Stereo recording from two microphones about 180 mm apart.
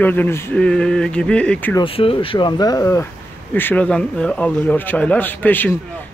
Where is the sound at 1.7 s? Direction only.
30° left (ahead or behind).